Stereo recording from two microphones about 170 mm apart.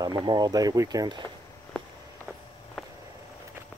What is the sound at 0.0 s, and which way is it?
Speech, 25° right (ahead or behind).